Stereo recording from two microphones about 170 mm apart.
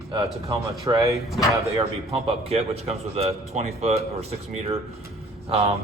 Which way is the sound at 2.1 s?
35° right (ahead or behind).